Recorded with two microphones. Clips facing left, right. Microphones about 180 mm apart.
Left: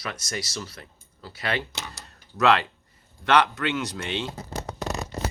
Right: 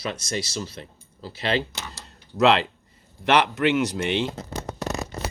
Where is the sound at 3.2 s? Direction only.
20° right (ahead or behind).